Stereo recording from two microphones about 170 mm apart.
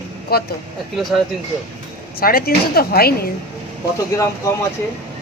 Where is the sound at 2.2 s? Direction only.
60° left (ahead or behind).